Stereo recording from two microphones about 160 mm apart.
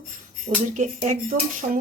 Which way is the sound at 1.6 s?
40° right (ahead or behind).